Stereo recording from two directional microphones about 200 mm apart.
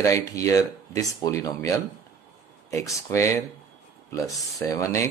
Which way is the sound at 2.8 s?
15° left (ahead or behind).